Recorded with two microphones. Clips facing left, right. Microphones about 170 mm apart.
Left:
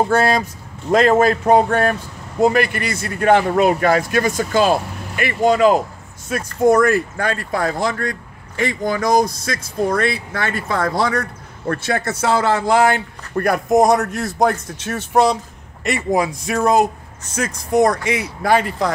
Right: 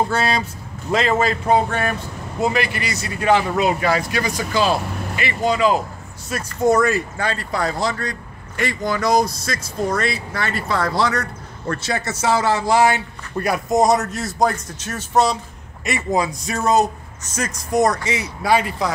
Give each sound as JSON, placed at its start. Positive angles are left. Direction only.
{"t": 0.1, "sound": "speech", "side_deg": 50}